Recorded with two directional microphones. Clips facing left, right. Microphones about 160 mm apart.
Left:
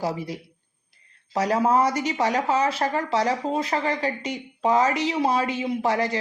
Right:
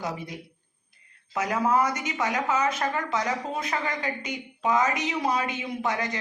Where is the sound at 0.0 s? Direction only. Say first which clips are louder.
Left 5 dB; 30° left (ahead or behind).